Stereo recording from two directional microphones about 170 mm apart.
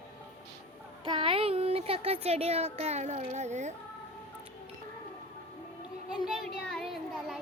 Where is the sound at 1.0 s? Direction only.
30° right (ahead or behind).